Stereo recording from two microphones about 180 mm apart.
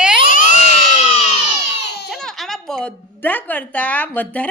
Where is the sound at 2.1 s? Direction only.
Centre (ahead or behind).